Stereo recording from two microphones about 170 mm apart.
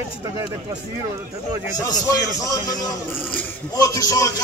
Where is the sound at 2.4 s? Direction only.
20° left (ahead or behind).